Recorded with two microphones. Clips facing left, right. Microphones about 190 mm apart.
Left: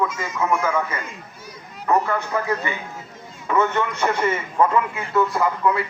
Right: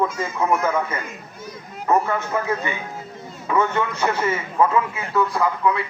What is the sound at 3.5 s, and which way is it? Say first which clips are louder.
A man's voice: even; 10° right (ahead or behind).